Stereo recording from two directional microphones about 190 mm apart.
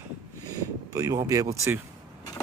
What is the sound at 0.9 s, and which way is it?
Speech, 20° right (ahead or behind).